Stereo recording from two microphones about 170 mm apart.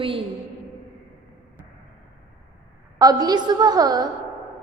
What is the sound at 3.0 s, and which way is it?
A woman's voice, 20° right (ahead or behind).